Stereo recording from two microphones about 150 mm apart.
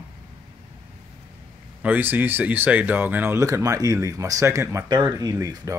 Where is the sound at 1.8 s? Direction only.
10° right (ahead or behind).